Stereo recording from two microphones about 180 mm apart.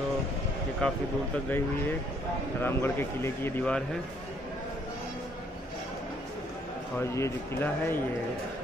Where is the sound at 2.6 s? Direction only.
10° left (ahead or behind).